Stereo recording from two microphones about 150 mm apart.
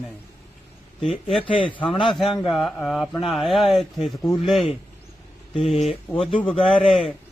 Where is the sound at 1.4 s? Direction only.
35° left (ahead or behind).